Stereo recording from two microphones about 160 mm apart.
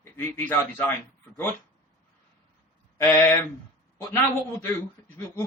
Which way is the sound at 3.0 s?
15° left (ahead or behind).